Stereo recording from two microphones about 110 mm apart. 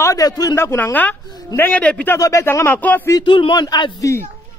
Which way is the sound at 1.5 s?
15° left (ahead or behind).